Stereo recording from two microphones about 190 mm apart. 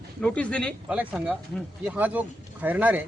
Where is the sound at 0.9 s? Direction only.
5° right (ahead or behind).